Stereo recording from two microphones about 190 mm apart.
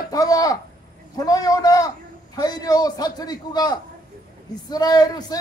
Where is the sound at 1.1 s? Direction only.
20° left (ahead or behind).